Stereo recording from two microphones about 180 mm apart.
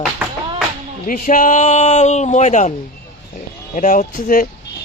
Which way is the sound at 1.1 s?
45° left (ahead or behind).